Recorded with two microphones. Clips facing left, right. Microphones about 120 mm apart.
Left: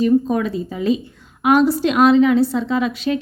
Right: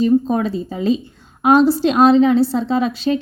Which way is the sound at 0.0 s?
30° right (ahead or behind).